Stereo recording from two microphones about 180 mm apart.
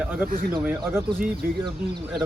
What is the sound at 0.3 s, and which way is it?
Speech, 55° right (ahead or behind).